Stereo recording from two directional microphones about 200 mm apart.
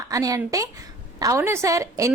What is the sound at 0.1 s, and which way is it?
A woman's voice, 15° right (ahead or behind).